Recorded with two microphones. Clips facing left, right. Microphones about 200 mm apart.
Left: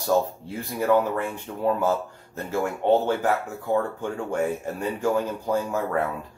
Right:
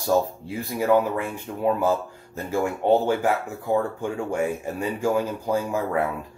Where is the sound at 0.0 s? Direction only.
10° right (ahead or behind).